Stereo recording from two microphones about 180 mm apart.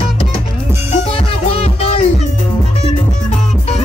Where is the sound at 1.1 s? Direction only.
30° left (ahead or behind).